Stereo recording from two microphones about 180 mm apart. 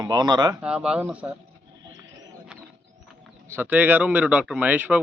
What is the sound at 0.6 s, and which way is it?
Speech, 5° right (ahead or behind).